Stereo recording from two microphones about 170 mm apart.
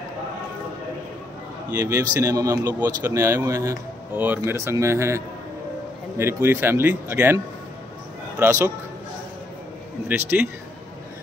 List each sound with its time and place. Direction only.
1.8 s speech: 15° right (ahead or behind)
10.0 s speech: 10° right (ahead or behind)